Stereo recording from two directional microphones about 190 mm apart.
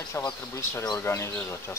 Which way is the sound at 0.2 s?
10° left (ahead or behind).